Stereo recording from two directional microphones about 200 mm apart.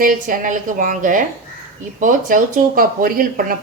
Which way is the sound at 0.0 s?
40° right (ahead or behind).